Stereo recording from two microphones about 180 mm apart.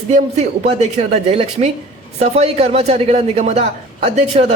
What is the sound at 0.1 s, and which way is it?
A man's voice, 40° right (ahead or behind).